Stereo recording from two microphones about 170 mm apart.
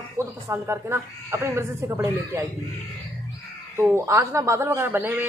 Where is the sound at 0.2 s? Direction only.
15° right (ahead or behind).